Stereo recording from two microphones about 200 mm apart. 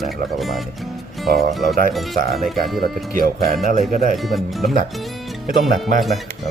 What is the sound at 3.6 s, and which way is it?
Speech, 40° right (ahead or behind).